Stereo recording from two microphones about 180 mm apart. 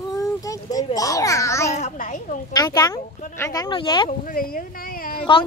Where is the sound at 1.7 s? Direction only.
45° left (ahead or behind).